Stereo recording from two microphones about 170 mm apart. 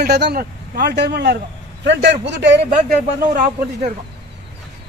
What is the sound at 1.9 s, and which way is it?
Speech, 90° right.